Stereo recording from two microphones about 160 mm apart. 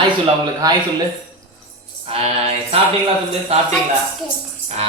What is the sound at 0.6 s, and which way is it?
Speech, 25° right (ahead or behind).